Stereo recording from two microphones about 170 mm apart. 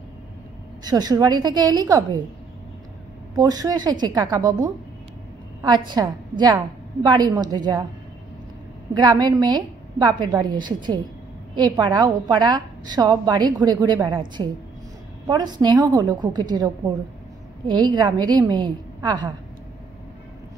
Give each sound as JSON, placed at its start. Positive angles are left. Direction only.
{"t": 0.8, "sound": "a woman's voice", "side_deg": -25}
{"t": 3.3, "sound": "a woman's voice", "side_deg": -20}
{"t": 8.9, "sound": "a woman's voice", "side_deg": -25}
{"t": 15.2, "sound": "a woman's voice", "side_deg": -25}